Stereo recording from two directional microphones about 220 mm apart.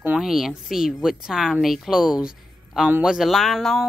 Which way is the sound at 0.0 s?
5° right (ahead or behind).